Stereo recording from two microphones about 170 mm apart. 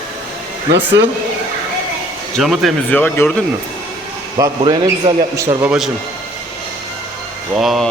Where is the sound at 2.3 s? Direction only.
Centre (ahead or behind).